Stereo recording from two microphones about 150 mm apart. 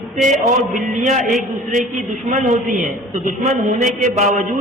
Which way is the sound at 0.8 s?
55° right (ahead or behind).